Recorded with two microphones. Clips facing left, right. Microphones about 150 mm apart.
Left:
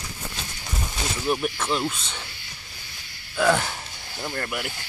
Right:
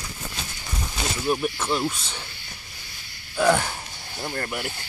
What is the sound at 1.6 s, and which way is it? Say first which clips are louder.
Speech: right 1 dB; 10° right (ahead or behind).